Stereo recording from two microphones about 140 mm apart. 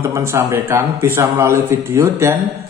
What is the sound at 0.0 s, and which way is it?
Speech, 20° right (ahead or behind).